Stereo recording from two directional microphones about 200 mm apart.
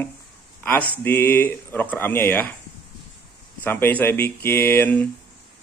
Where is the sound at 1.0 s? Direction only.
10° left (ahead or behind).